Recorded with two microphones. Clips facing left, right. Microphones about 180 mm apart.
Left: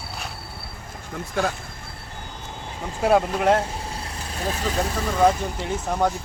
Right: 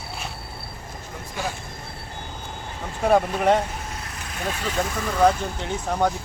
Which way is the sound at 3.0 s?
5° left (ahead or behind).